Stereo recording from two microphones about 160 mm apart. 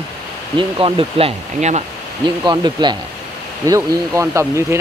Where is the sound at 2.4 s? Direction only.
25° right (ahead or behind).